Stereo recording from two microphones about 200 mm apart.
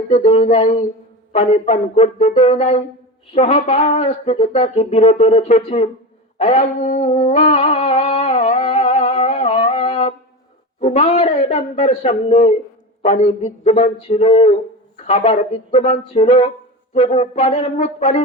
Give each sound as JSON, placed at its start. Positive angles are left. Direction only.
{"t": 0.1, "sound": "speech", "side_deg": 30}
{"t": 6.4, "sound": "music", "side_deg": 35}
{"t": 10.8, "sound": "speech", "side_deg": 35}